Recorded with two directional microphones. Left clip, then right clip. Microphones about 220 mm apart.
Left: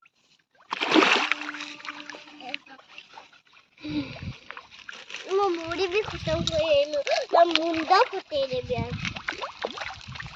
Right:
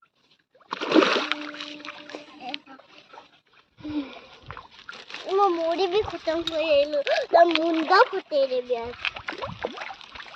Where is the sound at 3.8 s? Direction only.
Centre (ahead or behind).